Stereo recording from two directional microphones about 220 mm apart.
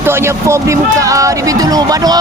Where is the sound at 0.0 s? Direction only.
10° right (ahead or behind).